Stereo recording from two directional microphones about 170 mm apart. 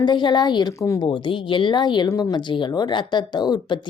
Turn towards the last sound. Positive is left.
turn(degrees=25)  # may be behind; listen again after turning